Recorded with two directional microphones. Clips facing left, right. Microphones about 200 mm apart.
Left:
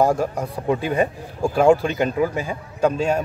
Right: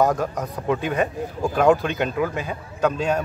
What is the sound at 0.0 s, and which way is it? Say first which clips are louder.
Speech: left 2 dB; 10° left (ahead or behind).